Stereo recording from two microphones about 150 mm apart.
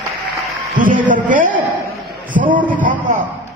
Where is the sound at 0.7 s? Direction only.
60° right (ahead or behind).